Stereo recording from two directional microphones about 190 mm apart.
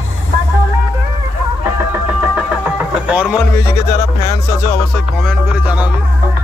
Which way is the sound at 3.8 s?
15° left (ahead or behind).